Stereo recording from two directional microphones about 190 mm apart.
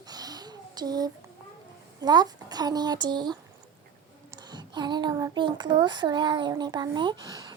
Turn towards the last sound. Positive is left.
turn(degrees=-20)  # may be behind; listen again after turning